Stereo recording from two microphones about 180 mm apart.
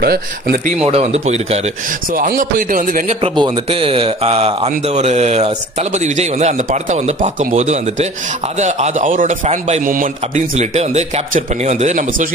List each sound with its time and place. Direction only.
0.0 s speech: 60° right (ahead or behind)
0.8 s speech: 35° right (ahead or behind)
2.1 s a man's voice: 50° right (ahead or behind)
3.2 s a man's voice: 30° right (ahead or behind)